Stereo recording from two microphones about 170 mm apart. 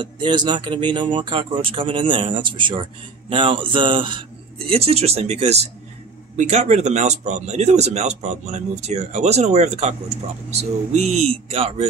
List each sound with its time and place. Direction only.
0.0 s speech: 25° right (ahead or behind)